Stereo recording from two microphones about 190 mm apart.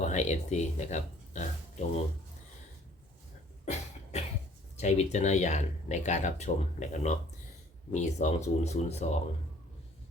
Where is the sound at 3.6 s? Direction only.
35° left (ahead or behind).